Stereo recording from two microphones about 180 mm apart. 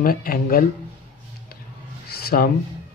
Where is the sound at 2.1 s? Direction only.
55° left (ahead or behind).